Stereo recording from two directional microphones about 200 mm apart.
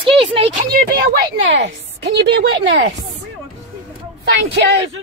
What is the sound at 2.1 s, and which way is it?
Speech, 60° right (ahead or behind).